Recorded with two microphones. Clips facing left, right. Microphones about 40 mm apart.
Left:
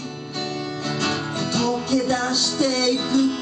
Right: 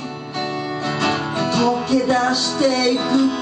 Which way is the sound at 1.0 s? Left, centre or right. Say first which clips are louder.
Right 5 dB; centre.